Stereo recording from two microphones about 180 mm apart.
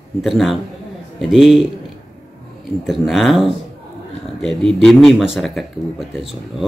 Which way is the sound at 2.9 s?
Centre (ahead or behind).